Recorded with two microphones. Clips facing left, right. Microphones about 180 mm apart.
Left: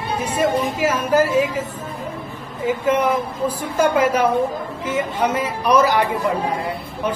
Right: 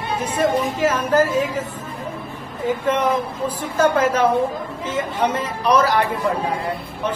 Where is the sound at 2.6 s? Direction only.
10° left (ahead or behind).